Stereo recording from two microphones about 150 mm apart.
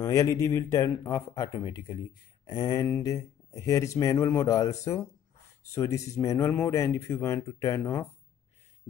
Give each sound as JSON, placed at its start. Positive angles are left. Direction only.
{"t": 0.0, "sound": "speech", "side_deg": 20}